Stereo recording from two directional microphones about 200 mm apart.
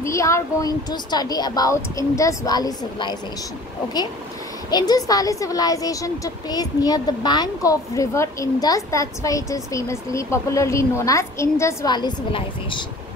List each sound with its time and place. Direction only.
0.0 s speech: 15° left (ahead or behind)
4.6 s speech: 20° left (ahead or behind)